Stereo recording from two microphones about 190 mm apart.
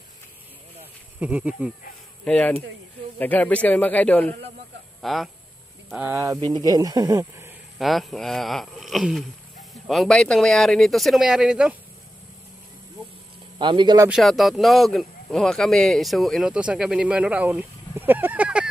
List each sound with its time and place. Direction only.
1.2 s speech: 5° right (ahead or behind)
2.2 s speech: 5° left (ahead or behind); by 7.5 s 15° right (ahead or behind)
7.8 s speech: centre (ahead or behind)
13.6 s a man's voice: 25° right (ahead or behind)
14.0 s speech: centre (ahead or behind)